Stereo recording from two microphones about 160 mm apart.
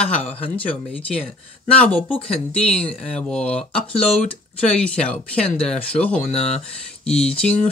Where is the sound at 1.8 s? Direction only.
10° left (ahead or behind).